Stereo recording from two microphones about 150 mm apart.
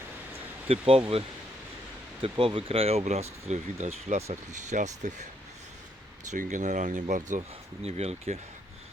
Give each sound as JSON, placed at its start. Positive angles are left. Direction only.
{"t": 0.7, "sound": "speech", "side_deg": -40}
{"t": 2.4, "sound": "speech", "side_deg": -40}
{"t": 6.3, "sound": "speech", "side_deg": -55}
{"t": 7.9, "sound": "speech", "side_deg": -45}